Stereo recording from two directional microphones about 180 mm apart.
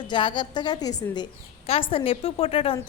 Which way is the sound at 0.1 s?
25° left (ahead or behind).